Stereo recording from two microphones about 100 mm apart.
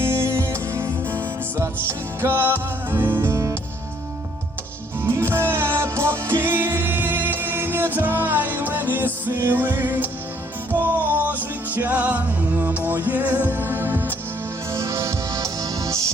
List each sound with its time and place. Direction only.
0.0 s music: 25° right (ahead or behind)
5.0 s music: 25° right (ahead or behind)